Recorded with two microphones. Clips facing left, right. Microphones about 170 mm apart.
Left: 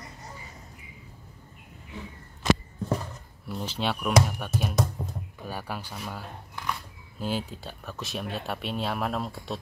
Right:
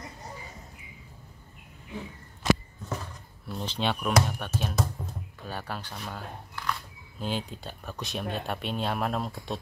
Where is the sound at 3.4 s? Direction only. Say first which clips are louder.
Even; 10° left (ahead or behind).